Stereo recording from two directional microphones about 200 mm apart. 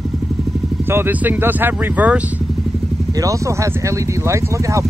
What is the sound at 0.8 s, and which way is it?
Speech, 10° right (ahead or behind).